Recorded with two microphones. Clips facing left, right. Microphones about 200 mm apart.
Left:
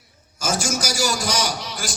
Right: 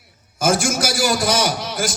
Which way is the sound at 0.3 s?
55° right (ahead or behind).